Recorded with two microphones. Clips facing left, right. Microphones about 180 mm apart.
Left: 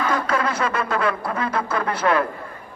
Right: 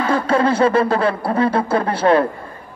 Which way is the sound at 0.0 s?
30° right (ahead or behind).